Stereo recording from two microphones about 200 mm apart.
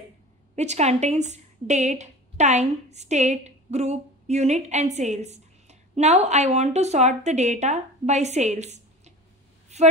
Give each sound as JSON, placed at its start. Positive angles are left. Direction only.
{"t": 0.6, "sound": "a woman's voice", "side_deg": -35}